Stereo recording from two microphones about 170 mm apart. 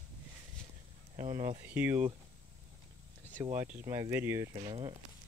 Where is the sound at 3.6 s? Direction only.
10° right (ahead or behind).